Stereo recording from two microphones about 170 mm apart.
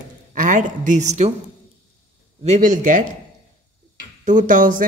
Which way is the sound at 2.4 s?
45° right (ahead or behind).